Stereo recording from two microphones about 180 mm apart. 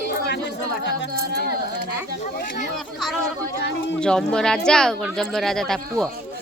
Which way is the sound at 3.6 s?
75° left (ahead or behind).